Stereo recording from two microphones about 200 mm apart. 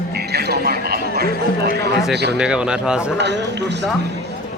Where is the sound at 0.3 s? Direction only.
55° right (ahead or behind).